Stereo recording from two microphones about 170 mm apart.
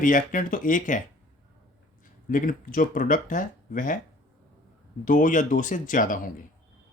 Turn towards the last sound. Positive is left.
turn(degrees=50)  # may be behind; listen again after turning